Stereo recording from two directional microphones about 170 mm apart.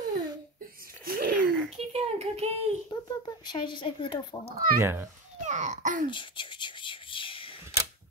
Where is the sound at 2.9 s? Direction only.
25° left (ahead or behind).